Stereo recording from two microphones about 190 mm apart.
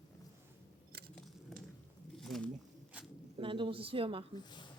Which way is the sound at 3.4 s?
25° right (ahead or behind).